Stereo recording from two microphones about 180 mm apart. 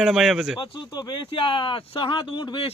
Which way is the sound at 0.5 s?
25° left (ahead or behind).